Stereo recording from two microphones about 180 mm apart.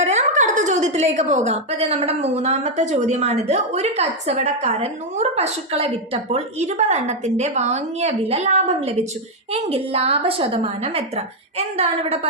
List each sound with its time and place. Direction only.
0.0 s a woman's voice: 40° right (ahead or behind)